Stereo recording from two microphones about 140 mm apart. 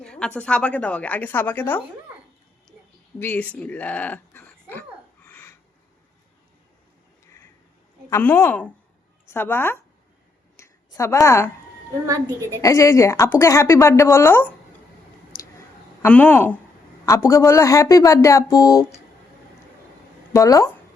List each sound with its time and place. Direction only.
0.0 s a woman's voice: 5° left (ahead or behind)
3.2 s speech: 10° left (ahead or behind)
5.3 s a sound: 10° left (ahead or behind)
8.1 s a woman's voice: 15° left (ahead or behind)
10.6 s a sound: 20° left (ahead or behind)
12.0 s a woman's voice: 25° right (ahead or behind)
12.6 s speech: 20° left (ahead or behind)
15.4 s a sound: 20° left (ahead or behind)
16.0 s a woman's voice: 10° left (ahead or behind)
20.3 s speech: 25° left (ahead or behind)